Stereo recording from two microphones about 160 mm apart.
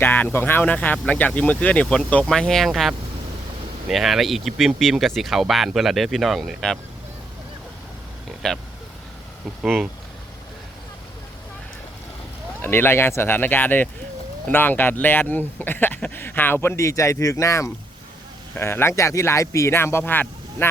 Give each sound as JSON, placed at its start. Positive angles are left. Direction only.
{"t": 0.0, "sound": "speech", "side_deg": 10}
{"t": 8.4, "sound": "speech", "side_deg": 0}
{"t": 9.6, "sound": "speech", "side_deg": 0}
{"t": 12.6, "sound": "speech", "side_deg": 15}